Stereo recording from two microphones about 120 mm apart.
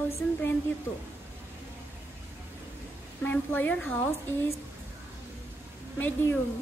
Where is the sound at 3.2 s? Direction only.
15° left (ahead or behind).